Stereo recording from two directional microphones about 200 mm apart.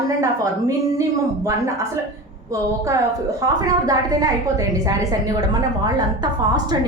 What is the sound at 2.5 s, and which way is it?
A woman's voice, 15° right (ahead or behind).